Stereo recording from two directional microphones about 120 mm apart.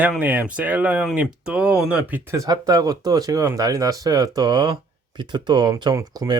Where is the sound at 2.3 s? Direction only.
30° right (ahead or behind).